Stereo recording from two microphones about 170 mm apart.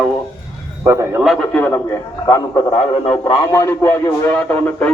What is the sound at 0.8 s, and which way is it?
Speech, 15° right (ahead or behind).